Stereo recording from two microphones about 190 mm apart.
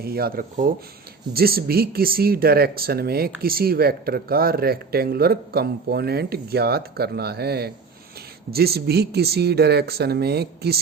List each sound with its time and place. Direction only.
0.0 s speech: 55° right (ahead or behind)